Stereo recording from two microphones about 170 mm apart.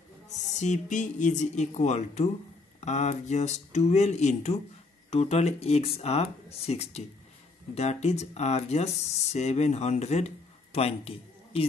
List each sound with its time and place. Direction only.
0.6 s speech: 45° left (ahead or behind)